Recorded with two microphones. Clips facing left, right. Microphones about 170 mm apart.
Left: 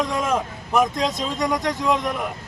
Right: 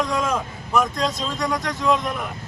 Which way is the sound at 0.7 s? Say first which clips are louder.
Left 1 dB; 20° left (ahead or behind).